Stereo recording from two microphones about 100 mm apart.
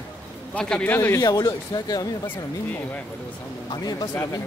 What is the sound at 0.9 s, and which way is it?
Speech, 25° left (ahead or behind).